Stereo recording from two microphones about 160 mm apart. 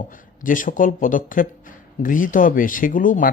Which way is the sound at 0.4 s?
55° left (ahead or behind).